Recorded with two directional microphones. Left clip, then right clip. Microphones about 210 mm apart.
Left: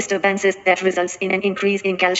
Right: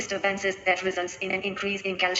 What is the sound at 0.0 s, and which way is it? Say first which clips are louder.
A woman's voice: left 9 dB; 45° left (ahead or behind).